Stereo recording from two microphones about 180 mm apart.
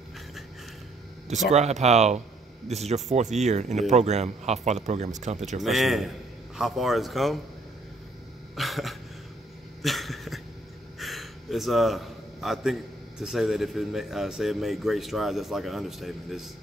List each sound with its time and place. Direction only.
1.5 s speech: 40° right (ahead or behind)
5.6 s a man's voice: centre (ahead or behind)
8.5 s cough: centre (ahead or behind)
9.8 s a sound: centre (ahead or behind)
11.0 s a man's voice: centre (ahead or behind)